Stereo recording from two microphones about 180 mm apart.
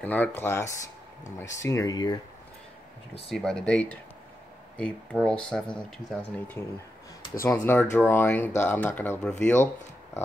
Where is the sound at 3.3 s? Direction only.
5° left (ahead or behind).